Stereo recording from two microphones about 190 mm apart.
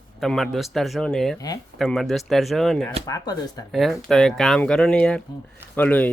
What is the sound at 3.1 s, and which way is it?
Speech, 20° left (ahead or behind).